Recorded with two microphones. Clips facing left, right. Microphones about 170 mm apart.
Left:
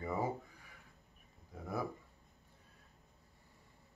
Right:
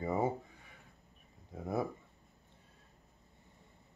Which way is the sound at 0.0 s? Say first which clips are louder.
Right 5 dB; 25° right (ahead or behind).